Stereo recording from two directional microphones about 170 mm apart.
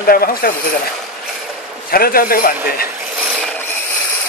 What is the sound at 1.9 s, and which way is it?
Speech, 60° left (ahead or behind).